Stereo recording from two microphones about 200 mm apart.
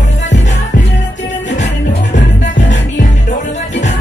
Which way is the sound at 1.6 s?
60° left (ahead or behind).